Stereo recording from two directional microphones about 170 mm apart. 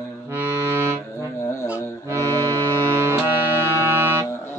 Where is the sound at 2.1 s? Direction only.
15° right (ahead or behind).